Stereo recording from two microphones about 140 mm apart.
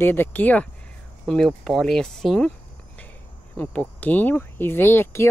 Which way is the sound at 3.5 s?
10° left (ahead or behind).